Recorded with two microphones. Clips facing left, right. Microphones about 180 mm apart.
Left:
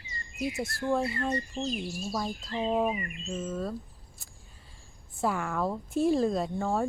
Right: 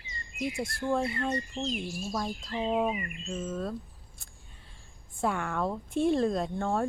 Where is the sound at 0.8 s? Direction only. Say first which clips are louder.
Left 1 dB; centre (ahead or behind).